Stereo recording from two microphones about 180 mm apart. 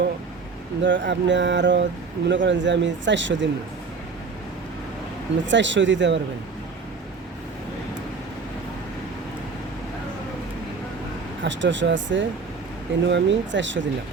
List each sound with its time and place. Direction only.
0.8 s speech: 90° right
5.5 s speech: 90° right
11.4 s speech: 90° right